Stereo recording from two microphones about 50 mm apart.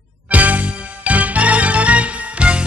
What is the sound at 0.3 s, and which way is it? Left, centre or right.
Music, right.